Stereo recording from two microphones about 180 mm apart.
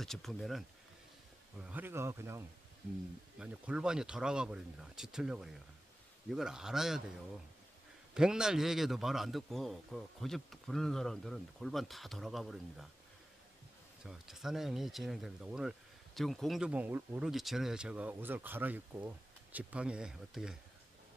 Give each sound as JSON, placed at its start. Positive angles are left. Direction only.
{"t": 0.0, "sound": "a man's voice", "side_deg": 0}
{"t": 1.6, "sound": "a man's voice", "side_deg": -10}
{"t": 8.1, "sound": "a man's voice", "side_deg": -5}
{"t": 14.0, "sound": "a man's voice", "side_deg": 0}